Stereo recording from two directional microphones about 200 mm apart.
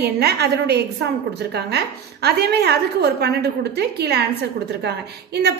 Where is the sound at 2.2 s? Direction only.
55° right (ahead or behind).